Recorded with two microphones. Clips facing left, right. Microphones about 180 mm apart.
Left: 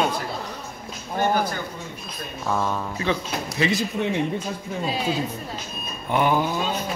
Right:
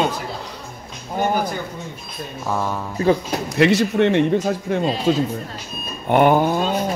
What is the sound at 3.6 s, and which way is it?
A man's voice, 70° right (ahead or behind).